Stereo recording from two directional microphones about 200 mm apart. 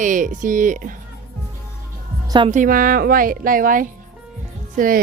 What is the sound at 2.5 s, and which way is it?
A woman's voice, 40° right (ahead or behind).